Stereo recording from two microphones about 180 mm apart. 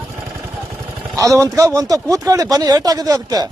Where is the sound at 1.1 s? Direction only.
20° right (ahead or behind).